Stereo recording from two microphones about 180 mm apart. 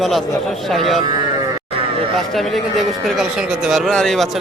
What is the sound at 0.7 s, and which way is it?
Speech, centre (ahead or behind).